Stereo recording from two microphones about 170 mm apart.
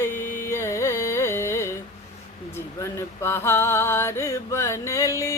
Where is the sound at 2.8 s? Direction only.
15° left (ahead or behind).